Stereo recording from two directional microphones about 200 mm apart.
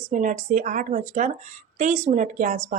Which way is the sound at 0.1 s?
40° right (ahead or behind).